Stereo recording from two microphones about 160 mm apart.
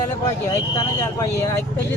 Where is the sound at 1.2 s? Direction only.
20° left (ahead or behind).